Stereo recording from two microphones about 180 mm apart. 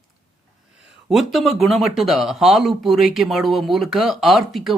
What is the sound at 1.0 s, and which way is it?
Speech, centre (ahead or behind).